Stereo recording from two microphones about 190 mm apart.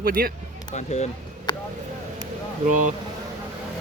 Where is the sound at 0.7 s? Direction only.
35° left (ahead or behind).